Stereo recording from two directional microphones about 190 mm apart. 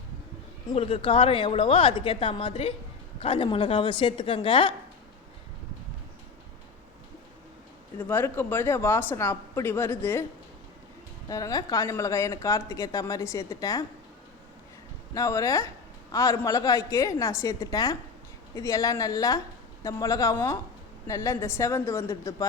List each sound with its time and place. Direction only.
0.7 s a woman's voice: 30° left (ahead or behind)
7.9 s speech: 10° left (ahead or behind)
11.3 s speech: 20° left (ahead or behind)
15.1 s speech: 15° left (ahead or behind)